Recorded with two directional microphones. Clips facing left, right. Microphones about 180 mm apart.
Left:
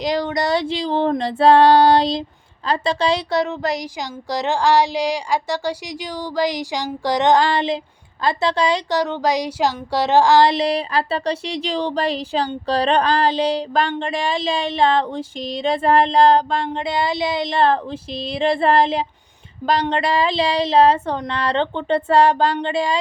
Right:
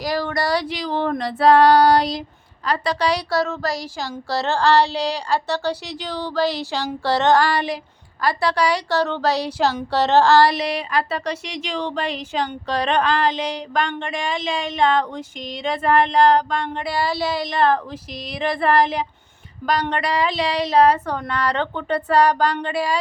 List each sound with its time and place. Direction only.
0.0 s a woman's voice: 20° left (ahead or behind)